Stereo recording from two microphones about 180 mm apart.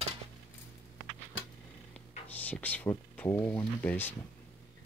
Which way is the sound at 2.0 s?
10° left (ahead or behind).